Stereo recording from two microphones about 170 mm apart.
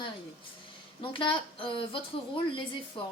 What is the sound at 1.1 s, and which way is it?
Speech, 30° left (ahead or behind).